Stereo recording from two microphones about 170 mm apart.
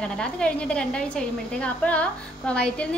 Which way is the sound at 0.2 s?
5° left (ahead or behind).